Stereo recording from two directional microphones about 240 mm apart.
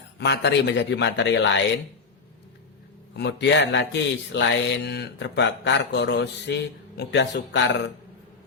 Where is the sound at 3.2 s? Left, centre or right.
Left.